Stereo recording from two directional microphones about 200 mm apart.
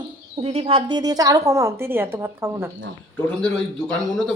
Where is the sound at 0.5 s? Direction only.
30° right (ahead or behind); by 2.7 s 10° right (ahead or behind).